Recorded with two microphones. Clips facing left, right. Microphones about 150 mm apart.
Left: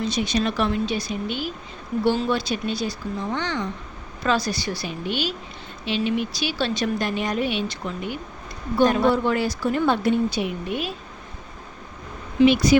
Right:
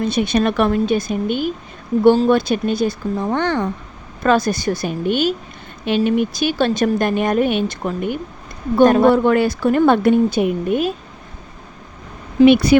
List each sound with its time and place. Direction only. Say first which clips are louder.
0.0 s speech: right 6 dB; 55° right (ahead or behind)
12.5 s speech: right 8 dB; 60° right (ahead or behind)